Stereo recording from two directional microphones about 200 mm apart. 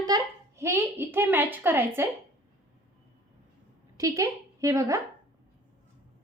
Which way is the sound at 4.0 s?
15° right (ahead or behind).